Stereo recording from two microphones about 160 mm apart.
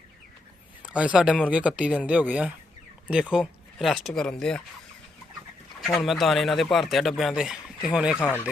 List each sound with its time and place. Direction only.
0.9 s speech: 5° right (ahead or behind)
5.9 s speech: centre (ahead or behind)